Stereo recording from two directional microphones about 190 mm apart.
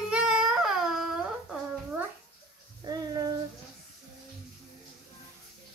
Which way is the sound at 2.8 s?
20° right (ahead or behind).